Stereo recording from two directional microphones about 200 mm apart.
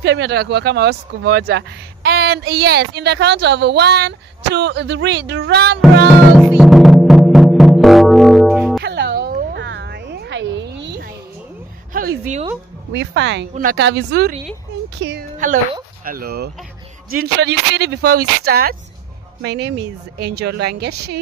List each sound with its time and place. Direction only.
0.0 s a woman's voice: 60° right (ahead or behind)
6.3 s music: centre (ahead or behind)
8.8 s a sound: 60° right (ahead or behind)
11.9 s a woman's voice: 45° right (ahead or behind)
12.9 s a woman's voice: 65° right (ahead or behind)
13.6 s a woman's voice: 50° right (ahead or behind)
15.3 s a woman's voice: 40° right (ahead or behind)